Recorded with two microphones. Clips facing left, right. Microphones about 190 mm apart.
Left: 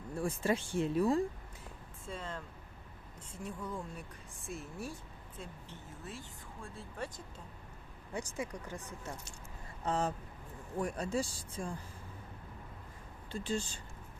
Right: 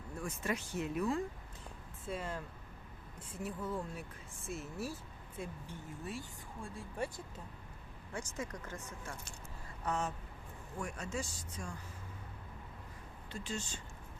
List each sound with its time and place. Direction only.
0.2 s speech: 30° left (ahead or behind)
2.0 s speech: 10° right (ahead or behind)
5.4 s speech: 15° right (ahead or behind)
8.1 s speech: 15° left (ahead or behind)
9.8 s speech: 30° left (ahead or behind)
13.3 s speech: 30° left (ahead or behind)